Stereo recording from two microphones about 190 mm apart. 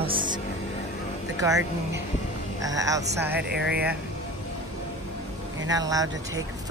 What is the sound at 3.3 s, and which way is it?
Speech, 55° right (ahead or behind).